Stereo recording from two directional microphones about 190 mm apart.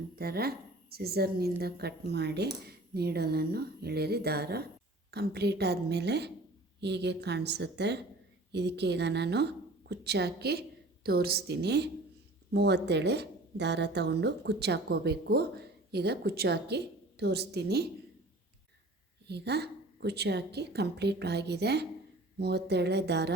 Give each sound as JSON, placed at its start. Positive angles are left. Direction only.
{"t": 0.2, "sound": "speech", "side_deg": -55}
{"t": 19.3, "sound": "speech", "side_deg": -60}